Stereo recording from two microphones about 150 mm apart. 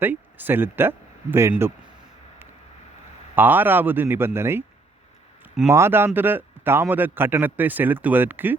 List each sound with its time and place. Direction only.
0.0 s speech: 10° right (ahead or behind)
3.3 s a man's voice: 10° right (ahead or behind)
5.6 s a man's voice: 15° right (ahead or behind)